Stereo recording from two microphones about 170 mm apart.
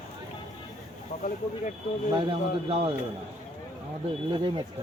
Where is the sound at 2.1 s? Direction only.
30° right (ahead or behind).